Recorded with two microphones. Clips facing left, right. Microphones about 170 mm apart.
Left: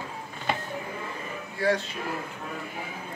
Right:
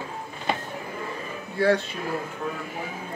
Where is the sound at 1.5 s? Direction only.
60° right (ahead or behind).